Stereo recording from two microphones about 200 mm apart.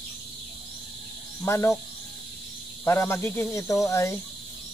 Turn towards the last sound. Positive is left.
turn(degrees=15)  # may be behind; listen again after turning